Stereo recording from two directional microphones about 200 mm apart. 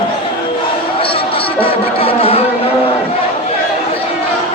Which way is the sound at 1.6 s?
30° left (ahead or behind).